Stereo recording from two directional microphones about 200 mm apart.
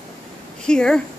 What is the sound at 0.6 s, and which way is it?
Speech, 5° left (ahead or behind).